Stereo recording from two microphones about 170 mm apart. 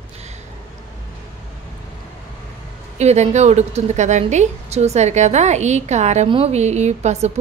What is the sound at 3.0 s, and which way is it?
A woman's voice, 40° right (ahead or behind).